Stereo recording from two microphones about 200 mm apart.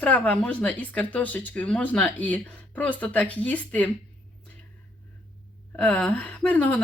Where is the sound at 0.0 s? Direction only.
5° left (ahead or behind).